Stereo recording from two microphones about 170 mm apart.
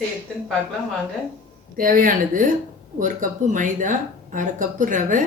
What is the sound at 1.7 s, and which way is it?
Speech, 55° right (ahead or behind).